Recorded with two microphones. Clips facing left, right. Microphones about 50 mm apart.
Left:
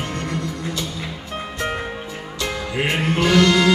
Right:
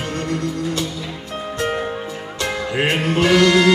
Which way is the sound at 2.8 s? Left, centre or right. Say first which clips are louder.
Right 2 dB; right.